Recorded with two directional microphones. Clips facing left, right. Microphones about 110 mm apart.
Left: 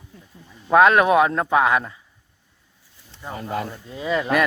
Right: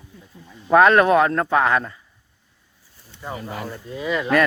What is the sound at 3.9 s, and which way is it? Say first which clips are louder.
Speech: left 1 dB; 25° left (ahead or behind).